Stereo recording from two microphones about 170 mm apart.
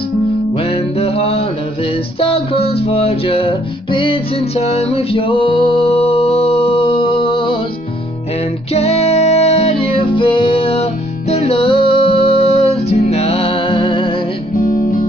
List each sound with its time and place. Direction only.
0.7 s music: 35° left (ahead or behind)
8.7 s music: 40° left (ahead or behind)
14.6 s music: 50° left (ahead or behind)